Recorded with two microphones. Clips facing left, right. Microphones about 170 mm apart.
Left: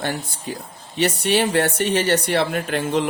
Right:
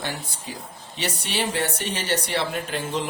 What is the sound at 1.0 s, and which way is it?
Speech, 55° left (ahead or behind).